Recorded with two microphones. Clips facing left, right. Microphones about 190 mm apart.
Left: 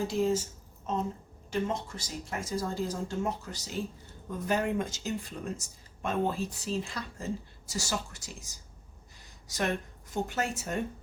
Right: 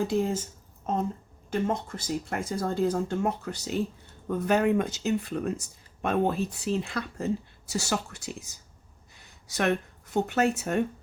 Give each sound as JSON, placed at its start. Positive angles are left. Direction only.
{"t": 0.1, "sound": "speech", "side_deg": -55}
{"t": 1.5, "sound": "speech", "side_deg": -55}
{"t": 9.5, "sound": "speech", "side_deg": -65}